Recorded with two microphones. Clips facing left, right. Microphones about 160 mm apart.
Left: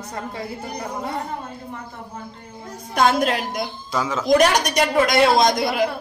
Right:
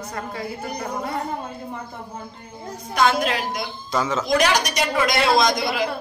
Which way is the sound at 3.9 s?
10° left (ahead or behind).